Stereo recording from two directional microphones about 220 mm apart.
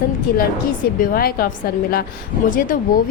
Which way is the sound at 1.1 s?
40° left (ahead or behind).